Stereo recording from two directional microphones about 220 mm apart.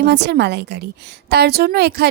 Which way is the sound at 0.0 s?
50° right (ahead or behind).